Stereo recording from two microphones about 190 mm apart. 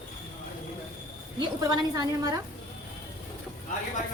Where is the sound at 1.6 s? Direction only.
20° right (ahead or behind).